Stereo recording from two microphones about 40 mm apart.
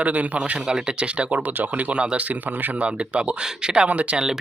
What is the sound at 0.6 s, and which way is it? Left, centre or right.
A man's voice, right.